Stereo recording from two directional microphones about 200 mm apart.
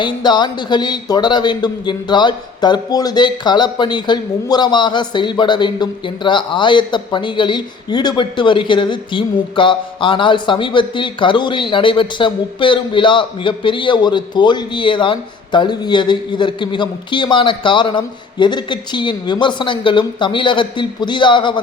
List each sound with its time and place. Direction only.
0.0 s a man's voice: 20° left (ahead or behind)